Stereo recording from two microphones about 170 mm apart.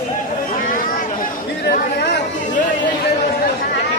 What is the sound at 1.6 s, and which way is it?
Chatter, 75° left (ahead or behind).